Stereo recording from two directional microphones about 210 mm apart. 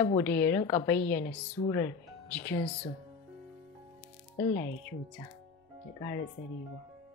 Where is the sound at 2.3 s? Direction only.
10° left (ahead or behind).